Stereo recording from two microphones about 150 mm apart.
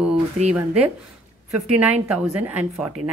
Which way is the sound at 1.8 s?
10° right (ahead or behind).